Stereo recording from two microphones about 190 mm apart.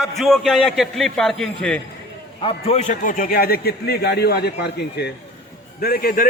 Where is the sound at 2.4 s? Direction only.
35° left (ahead or behind); by 6.3 s 50° left (ahead or behind).